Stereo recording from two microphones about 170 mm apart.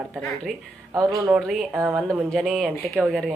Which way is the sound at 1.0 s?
20° right (ahead or behind).